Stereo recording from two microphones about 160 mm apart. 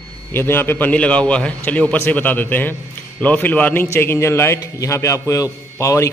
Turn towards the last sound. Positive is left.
turn(degrees=20)  # may be behind; listen again after turning